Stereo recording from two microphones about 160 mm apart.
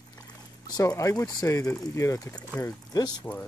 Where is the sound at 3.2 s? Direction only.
10° left (ahead or behind).